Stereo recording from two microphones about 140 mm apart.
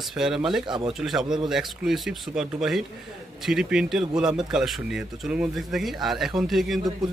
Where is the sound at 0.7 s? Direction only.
35° right (ahead or behind).